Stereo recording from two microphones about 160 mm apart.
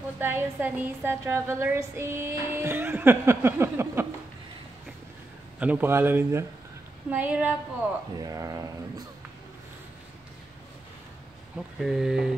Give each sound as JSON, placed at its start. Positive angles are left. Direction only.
{"t": 0.2, "sound": "a woman's voice", "side_deg": -10}
{"t": 5.6, "sound": "a woman's voice", "side_deg": -10}
{"t": 8.2, "sound": "speech", "side_deg": -20}
{"t": 11.5, "sound": "speech", "side_deg": -5}